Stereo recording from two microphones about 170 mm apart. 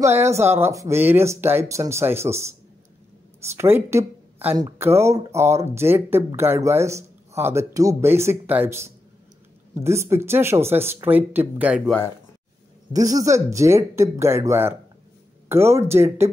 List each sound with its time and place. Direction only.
0.0 s speech: 15° right (ahead or behind)
12.9 s speech: 20° right (ahead or behind)